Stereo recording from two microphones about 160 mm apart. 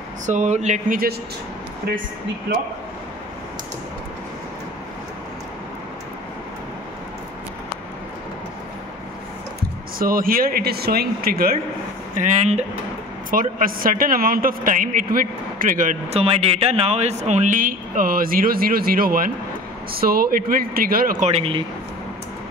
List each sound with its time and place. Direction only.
0.3 s speech: 45° right (ahead or behind)
2.5 s speech: 90° right
9.6 s speech: 65° right (ahead or behind)
12.2 s speech: 45° right (ahead or behind)
13.3 s speech: 60° right (ahead or behind)
16.1 s speech: 40° right (ahead or behind); by 21.3 s 60° right (ahead or behind)
21.3 s speech: 40° right (ahead or behind)